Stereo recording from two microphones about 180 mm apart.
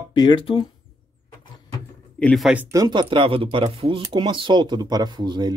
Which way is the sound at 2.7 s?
25° right (ahead or behind).